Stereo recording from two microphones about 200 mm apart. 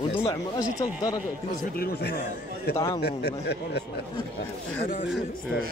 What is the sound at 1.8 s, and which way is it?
Speech, 55° left (ahead or behind).